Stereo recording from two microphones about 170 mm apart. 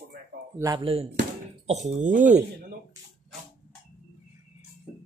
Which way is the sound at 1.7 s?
40° right (ahead or behind).